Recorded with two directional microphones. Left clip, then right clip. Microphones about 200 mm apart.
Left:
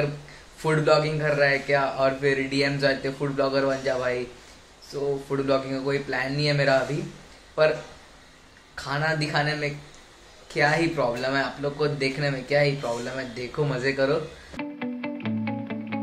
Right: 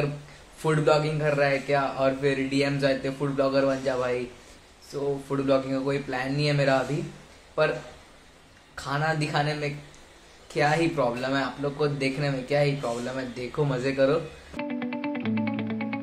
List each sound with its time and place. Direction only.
0.6 s a man's voice: 5° right (ahead or behind)
8.7 s speech: 5° right (ahead or behind)
14.6 s music: centre (ahead or behind)